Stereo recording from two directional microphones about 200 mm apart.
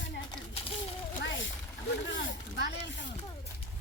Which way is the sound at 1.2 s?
70° left (ahead or behind).